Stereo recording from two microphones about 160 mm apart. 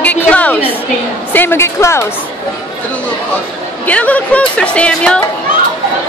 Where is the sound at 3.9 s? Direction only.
10° left (ahead or behind).